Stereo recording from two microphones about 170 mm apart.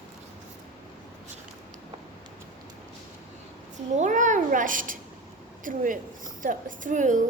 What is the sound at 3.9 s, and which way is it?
Speech, 45° right (ahead or behind).